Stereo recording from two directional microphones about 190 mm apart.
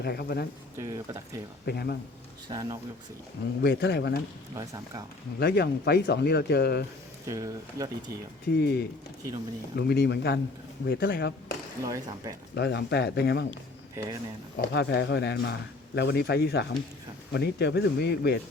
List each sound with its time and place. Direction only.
0.0 s speech: 55° left (ahead or behind)
0.8 s speech: 15° right (ahead or behind)
1.6 s speech: 55° left (ahead or behind)
2.5 s speech: 20° right (ahead or behind)
3.6 s speech: 60° left (ahead or behind)
4.5 s speech: 15° right (ahead or behind)
5.4 s speech: 60° left (ahead or behind)
7.3 s speech: 20° right (ahead or behind)
8.5 s speech: 60° left (ahead or behind)
11.8 s speech: 15° right (ahead or behind)
12.5 s speech: 60° left (ahead or behind)
13.5 s speech: 20° right (ahead or behind)
14.7 s speech: 65° left (ahead or behind)